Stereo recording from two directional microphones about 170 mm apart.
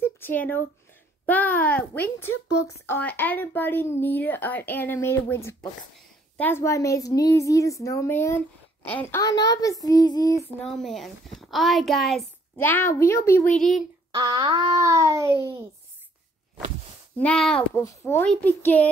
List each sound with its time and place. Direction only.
0.0 s a sound: 10° left (ahead or behind)
1.2 s a woman's voice: 10° left (ahead or behind)
10.6 s a woman's voice: centre (ahead or behind)
12.5 s speech: 10° left (ahead or behind)
14.1 s a sound: 25° right (ahead or behind)
17.2 s speech: 5° left (ahead or behind)